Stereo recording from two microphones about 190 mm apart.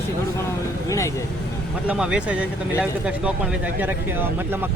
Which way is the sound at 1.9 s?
5° right (ahead or behind).